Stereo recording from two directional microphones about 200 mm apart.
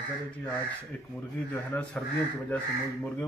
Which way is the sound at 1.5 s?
10° left (ahead or behind).